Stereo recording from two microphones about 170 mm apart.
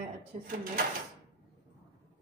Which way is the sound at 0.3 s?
40° right (ahead or behind).